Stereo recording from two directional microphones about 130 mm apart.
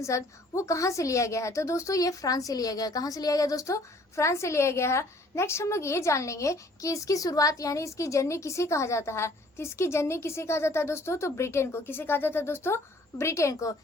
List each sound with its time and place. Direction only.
0.0 s a woman's voice: 25° left (ahead or behind)